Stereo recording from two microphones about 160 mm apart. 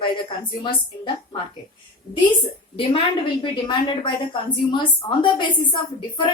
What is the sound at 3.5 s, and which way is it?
A woman's voice, 30° left (ahead or behind).